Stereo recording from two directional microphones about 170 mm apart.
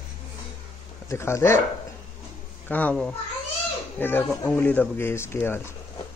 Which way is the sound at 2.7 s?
10° left (ahead or behind).